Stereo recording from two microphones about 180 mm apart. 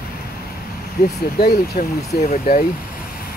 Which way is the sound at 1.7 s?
40° left (ahead or behind).